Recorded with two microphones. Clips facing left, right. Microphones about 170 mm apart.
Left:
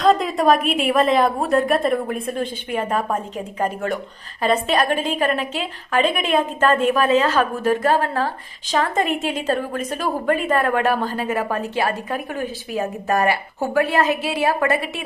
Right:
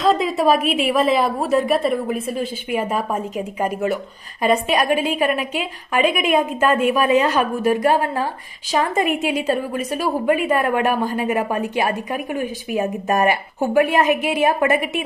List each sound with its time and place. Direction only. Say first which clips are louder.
0.0 s a woman's voice: even; centre (ahead or behind); by 15.0 s 20° right (ahead or behind)